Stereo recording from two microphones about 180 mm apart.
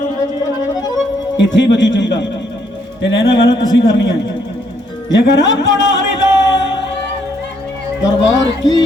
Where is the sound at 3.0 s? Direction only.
90° left.